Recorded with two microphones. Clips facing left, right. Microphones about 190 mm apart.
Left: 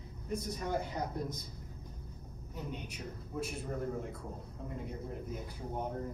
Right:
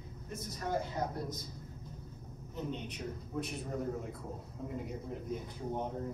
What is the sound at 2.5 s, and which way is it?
A man's voice, 10° left (ahead or behind).